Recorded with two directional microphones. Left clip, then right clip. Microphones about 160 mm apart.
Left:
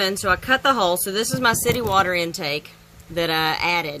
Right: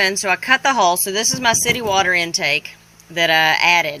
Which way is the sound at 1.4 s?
10° left (ahead or behind).